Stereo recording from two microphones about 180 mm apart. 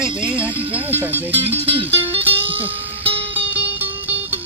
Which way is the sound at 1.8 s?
30° right (ahead or behind).